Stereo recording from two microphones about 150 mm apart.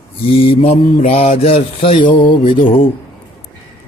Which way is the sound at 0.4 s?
40° left (ahead or behind).